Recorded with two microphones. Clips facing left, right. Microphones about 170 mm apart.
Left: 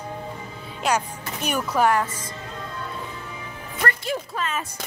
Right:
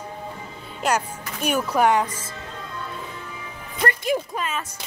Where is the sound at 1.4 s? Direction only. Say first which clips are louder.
Right 2 dB; 10° right (ahead or behind).